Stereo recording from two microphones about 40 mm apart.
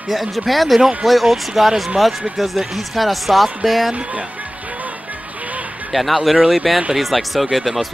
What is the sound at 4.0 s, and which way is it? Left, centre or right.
Speech, right.